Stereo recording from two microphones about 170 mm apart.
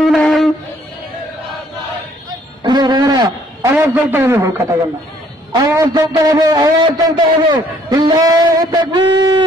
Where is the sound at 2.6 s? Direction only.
25° right (ahead or behind).